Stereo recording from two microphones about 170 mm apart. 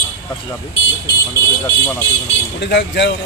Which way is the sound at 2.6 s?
90° left.